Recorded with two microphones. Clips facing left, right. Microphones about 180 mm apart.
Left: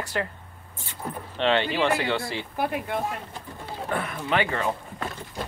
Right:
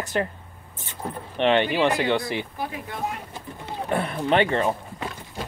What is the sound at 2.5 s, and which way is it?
Speech, 65° left (ahead or behind).